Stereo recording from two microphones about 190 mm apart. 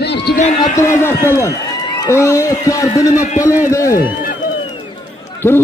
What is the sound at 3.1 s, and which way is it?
Speech, 40° left (ahead or behind).